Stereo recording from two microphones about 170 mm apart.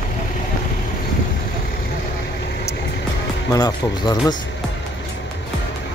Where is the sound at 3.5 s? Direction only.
25° left (ahead or behind).